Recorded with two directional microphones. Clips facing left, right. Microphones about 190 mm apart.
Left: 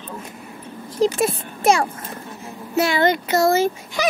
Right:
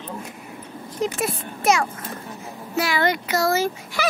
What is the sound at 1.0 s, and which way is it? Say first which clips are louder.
A child's voice: left 6 dB; 25° left (ahead or behind).